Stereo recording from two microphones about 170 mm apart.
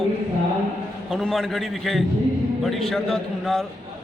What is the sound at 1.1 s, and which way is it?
Speech, centre (ahead or behind).